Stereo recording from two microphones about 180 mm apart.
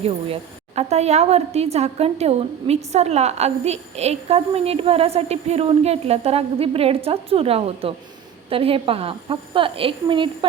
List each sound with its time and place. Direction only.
0.8 s a woman's voice: 35° right (ahead or behind)